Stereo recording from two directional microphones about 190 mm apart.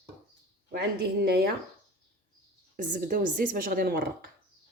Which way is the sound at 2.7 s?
45° right (ahead or behind).